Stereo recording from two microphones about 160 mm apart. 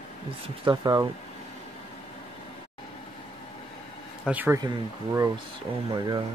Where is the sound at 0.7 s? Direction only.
25° right (ahead or behind).